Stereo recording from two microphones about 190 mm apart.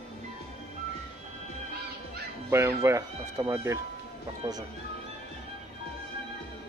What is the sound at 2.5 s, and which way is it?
Speech, 15° right (ahead or behind).